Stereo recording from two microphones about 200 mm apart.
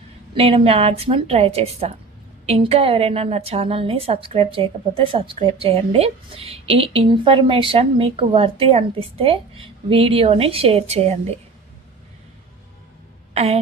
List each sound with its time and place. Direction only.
0.3 s a woman's voice: 30° right (ahead or behind)
13.3 s speech: 30° right (ahead or behind)